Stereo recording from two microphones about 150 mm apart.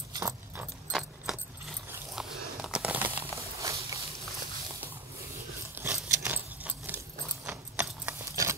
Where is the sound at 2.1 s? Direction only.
5° right (ahead or behind); by 4.0 s 20° right (ahead or behind).